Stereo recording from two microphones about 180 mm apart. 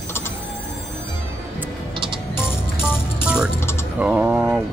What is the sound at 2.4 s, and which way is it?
Music, 15° left (ahead or behind).